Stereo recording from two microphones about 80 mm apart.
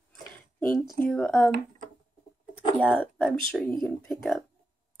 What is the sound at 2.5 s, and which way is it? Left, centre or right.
Speech, centre.